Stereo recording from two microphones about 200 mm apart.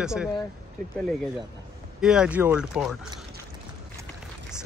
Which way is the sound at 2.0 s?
5° right (ahead or behind).